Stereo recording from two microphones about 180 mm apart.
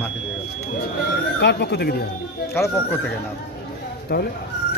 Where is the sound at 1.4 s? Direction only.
65° left (ahead or behind).